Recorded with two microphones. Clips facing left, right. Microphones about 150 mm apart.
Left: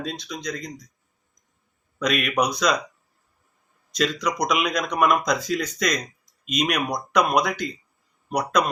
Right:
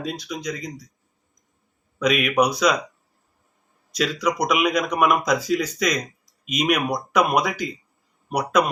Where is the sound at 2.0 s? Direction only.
5° right (ahead or behind).